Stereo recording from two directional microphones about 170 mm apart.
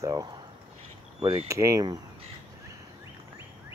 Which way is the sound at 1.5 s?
20° right (ahead or behind).